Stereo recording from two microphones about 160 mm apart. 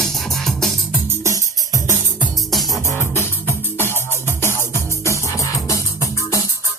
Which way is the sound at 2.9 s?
15° left (ahead or behind).